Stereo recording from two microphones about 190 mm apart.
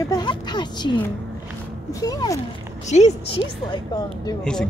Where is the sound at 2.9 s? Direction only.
35° left (ahead or behind).